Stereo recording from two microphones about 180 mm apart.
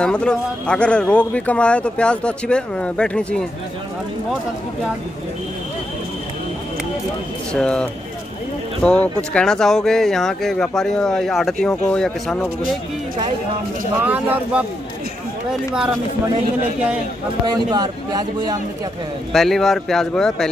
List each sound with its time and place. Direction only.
0.0 s speech: 5° left (ahead or behind)
7.5 s speech: 5° left (ahead or behind)
13.9 s speech: 10° right (ahead or behind)
17.6 s speech: 25° right (ahead or behind)
19.3 s speech: centre (ahead or behind)